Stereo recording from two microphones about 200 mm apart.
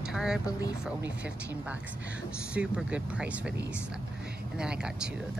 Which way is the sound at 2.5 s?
5° right (ahead or behind).